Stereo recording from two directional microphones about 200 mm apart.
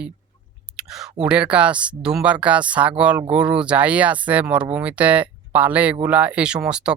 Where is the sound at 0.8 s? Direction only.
5° right (ahead or behind).